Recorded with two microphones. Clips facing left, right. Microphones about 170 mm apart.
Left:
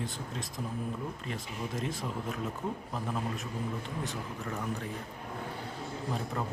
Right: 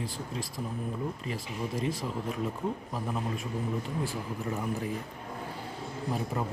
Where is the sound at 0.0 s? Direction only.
Centre (ahead or behind).